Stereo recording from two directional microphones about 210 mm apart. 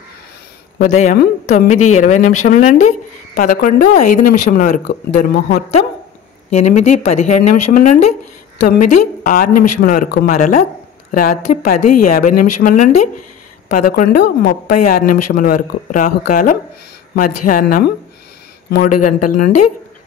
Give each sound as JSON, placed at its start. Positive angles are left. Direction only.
{"t": 0.7, "sound": "a woman's voice", "side_deg": 35}
{"t": 10.3, "sound": "a woman's voice", "side_deg": 35}